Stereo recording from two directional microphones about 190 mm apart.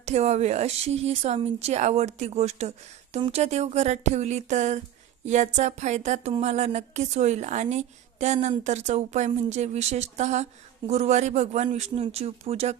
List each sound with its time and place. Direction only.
0.0 s speech: 35° right (ahead or behind)